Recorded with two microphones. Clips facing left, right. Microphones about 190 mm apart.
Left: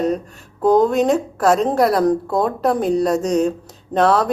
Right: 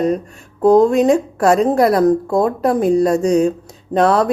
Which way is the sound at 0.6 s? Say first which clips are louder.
Right 4 dB; 30° right (ahead or behind).